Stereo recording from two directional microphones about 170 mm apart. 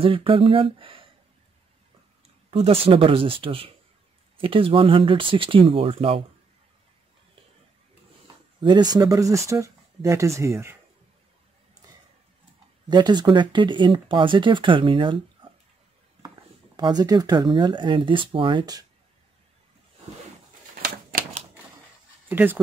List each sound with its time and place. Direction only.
0.0 s speech: 35° right (ahead or behind)
2.5 s speech: 35° right (ahead or behind)
8.5 s speech: 25° right (ahead or behind)
12.8 s speech: 25° right (ahead or behind)
16.7 s speech: 25° right (ahead or behind)
22.3 s speech: 10° right (ahead or behind)